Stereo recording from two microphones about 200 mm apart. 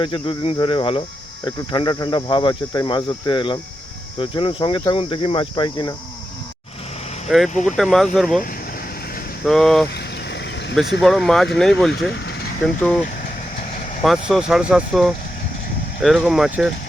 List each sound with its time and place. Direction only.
0.0 s speech: 25° left (ahead or behind)
7.3 s speech: centre (ahead or behind)
9.5 s speech: centre (ahead or behind)
9.9 s a sound: 55° left (ahead or behind)
11.0 s speech: centre (ahead or behind)
12.1 s vehicle: 60° left (ahead or behind)
12.6 s speech: 5° left (ahead or behind)
13.6 s vehicle: 40° left (ahead or behind)
14.3 s speech: centre (ahead or behind)